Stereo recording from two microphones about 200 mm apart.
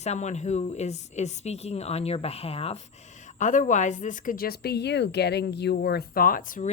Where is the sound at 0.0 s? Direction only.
35° left (ahead or behind).